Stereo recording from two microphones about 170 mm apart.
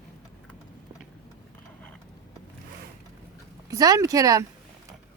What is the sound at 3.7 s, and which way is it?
Speech, 20° right (ahead or behind).